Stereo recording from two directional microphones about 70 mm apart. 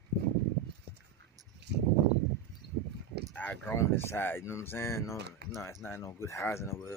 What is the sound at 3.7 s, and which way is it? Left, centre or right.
Speech, left.